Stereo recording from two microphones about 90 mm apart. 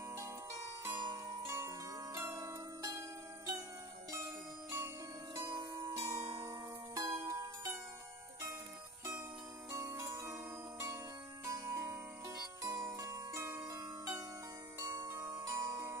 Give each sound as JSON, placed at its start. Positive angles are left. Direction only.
{"t": 0.1, "sound": "zither", "side_deg": -35}
{"t": 5.9, "sound": "music", "side_deg": -35}
{"t": 9.7, "sound": "music", "side_deg": -35}
{"t": 15.4, "sound": "music", "side_deg": -40}